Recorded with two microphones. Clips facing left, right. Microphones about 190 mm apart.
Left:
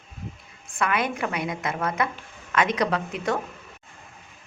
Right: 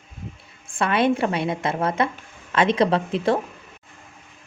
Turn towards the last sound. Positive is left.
turn(degrees=-30)  # may be behind; listen again after turning